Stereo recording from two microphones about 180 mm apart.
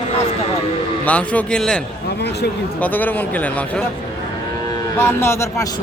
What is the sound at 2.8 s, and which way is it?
A man's voice, 10° left (ahead or behind).